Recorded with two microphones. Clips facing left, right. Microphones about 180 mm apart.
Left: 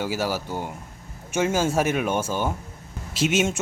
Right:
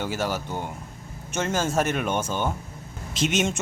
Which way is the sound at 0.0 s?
5° left (ahead or behind).